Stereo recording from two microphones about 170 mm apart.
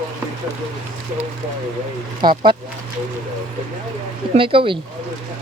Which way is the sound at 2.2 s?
25° right (ahead or behind).